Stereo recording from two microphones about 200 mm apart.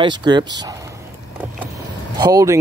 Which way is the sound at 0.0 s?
20° right (ahead or behind).